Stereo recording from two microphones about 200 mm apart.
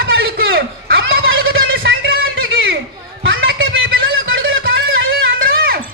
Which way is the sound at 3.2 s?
75° right (ahead or behind).